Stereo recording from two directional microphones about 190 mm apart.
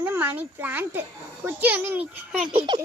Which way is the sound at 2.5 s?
25° right (ahead or behind).